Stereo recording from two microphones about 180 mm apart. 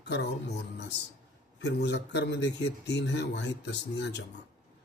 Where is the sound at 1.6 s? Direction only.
70° left (ahead or behind).